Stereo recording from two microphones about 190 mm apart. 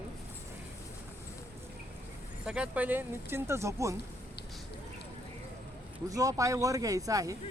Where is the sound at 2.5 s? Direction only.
5° right (ahead or behind).